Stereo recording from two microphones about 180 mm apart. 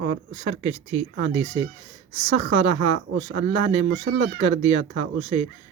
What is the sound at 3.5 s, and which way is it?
Speech, 25° left (ahead or behind).